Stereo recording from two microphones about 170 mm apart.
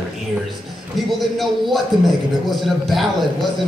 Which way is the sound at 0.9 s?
Centre (ahead or behind).